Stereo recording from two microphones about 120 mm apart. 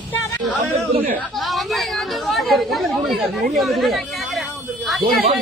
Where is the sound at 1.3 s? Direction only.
Centre (ahead or behind).